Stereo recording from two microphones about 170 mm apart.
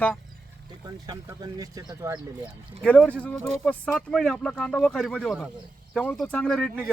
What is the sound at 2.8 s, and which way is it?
Speech, 5° left (ahead or behind).